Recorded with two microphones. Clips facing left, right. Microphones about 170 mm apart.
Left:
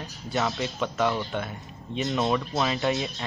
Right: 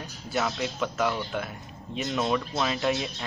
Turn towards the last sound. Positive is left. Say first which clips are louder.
# left 1 dB
turn(degrees=0)  # may be behind; listen again after turning